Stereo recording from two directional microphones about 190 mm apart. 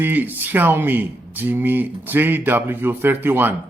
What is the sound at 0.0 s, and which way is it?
Speech, 10° right (ahead or behind).